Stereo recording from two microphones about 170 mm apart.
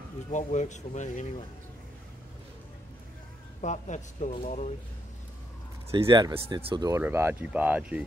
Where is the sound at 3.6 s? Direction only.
45° left (ahead or behind).